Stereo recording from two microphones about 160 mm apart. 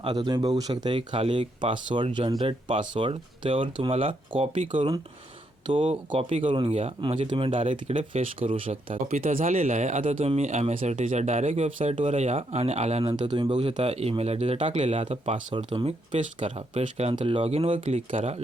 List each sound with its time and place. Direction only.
0.0 s speech: 25° right (ahead or behind)